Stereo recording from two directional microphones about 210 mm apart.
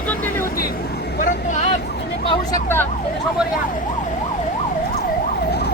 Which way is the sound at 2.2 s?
25° left (ahead or behind).